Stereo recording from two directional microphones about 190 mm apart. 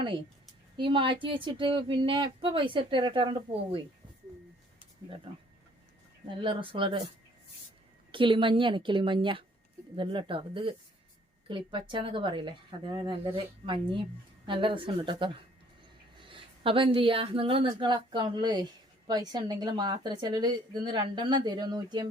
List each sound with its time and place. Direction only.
0.8 s a woman's voice: 25° right (ahead or behind)
6.2 s a woman's voice: 25° right (ahead or behind)
8.1 s a woman's voice: 25° right (ahead or behind)